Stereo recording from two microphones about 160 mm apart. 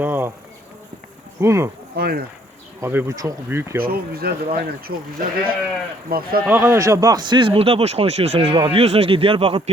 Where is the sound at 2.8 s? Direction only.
15° right (ahead or behind).